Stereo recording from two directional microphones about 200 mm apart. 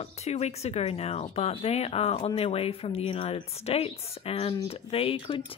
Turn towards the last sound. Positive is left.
turn(degrees=25)  # may be behind; listen again after turning